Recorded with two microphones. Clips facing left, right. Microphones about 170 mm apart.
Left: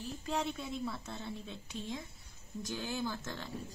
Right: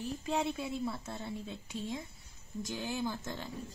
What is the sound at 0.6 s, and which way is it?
A woman's voice, 5° right (ahead or behind).